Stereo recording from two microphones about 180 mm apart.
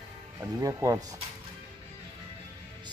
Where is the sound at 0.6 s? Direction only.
20° right (ahead or behind).